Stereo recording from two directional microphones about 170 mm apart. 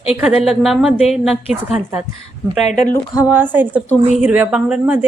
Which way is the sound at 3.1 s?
10° right (ahead or behind).